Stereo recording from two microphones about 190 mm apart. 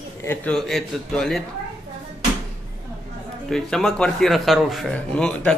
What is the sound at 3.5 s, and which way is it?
A man's voice, 5° left (ahead or behind).